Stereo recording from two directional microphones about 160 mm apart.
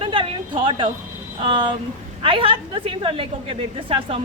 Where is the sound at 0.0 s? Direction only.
35° right (ahead or behind).